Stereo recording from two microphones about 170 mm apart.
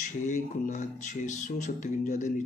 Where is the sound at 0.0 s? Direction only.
45° left (ahead or behind).